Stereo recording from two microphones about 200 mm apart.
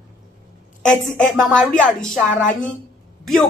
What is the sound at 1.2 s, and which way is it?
Speech, 5° left (ahead or behind).